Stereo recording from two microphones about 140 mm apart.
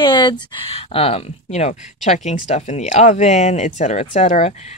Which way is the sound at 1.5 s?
55° left (ahead or behind).